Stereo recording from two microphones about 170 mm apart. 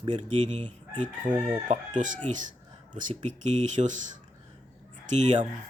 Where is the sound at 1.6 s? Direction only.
45° right (ahead or behind).